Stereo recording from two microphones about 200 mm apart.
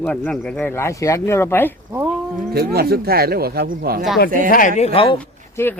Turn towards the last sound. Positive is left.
turn(degrees=10)  # may be behind; listen again after turning